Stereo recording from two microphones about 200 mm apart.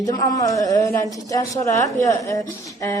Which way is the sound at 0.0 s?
15° left (ahead or behind).